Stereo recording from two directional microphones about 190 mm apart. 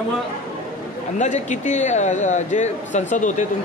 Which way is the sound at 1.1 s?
40° left (ahead or behind).